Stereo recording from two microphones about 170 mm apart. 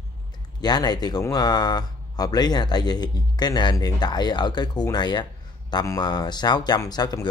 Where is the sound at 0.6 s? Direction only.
25° left (ahead or behind).